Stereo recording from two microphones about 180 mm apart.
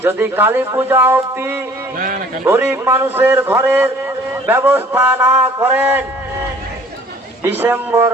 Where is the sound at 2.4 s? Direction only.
10° right (ahead or behind).